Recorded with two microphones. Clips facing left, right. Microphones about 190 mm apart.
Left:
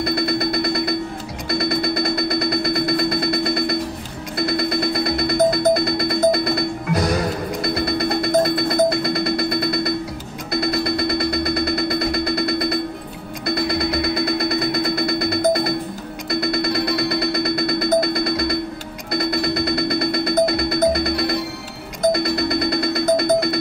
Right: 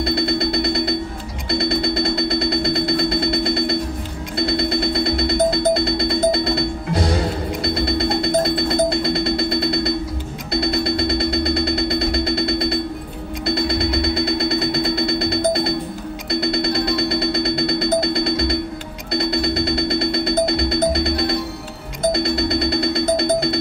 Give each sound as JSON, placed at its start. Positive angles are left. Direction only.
{"t": 0.0, "sound": "music", "side_deg": -25}
{"t": 1.5, "sound": "a sound", "side_deg": -25}
{"t": 4.4, "sound": "music", "side_deg": -25}